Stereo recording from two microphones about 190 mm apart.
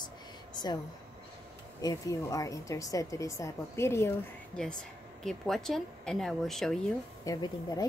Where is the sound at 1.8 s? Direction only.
20° left (ahead or behind).